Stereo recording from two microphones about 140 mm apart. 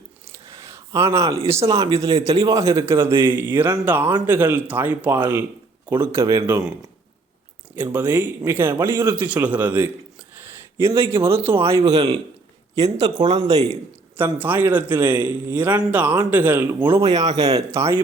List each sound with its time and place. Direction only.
0.5 s a sound: 20° right (ahead or behind)
1.5 s speech: 20° right (ahead or behind)
7.9 s speech: 15° right (ahead or behind)
11.9 s speech: 30° right (ahead or behind)
14.2 s speech: 15° right (ahead or behind)
16.9 s speech: 50° right (ahead or behind)
17.2 s speech: 25° right (ahead or behind)